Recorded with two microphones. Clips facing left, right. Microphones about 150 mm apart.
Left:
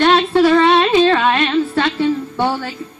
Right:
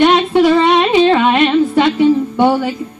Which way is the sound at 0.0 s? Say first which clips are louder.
Right 2 dB; 15° right (ahead or behind).